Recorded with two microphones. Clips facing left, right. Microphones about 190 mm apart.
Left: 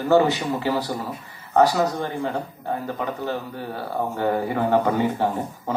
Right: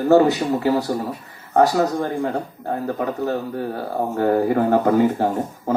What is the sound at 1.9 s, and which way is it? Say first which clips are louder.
Speech: right 4 dB; 45° right (ahead or behind).